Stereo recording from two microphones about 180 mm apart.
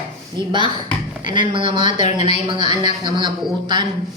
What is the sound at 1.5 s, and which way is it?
A man's voice, 25° right (ahead or behind).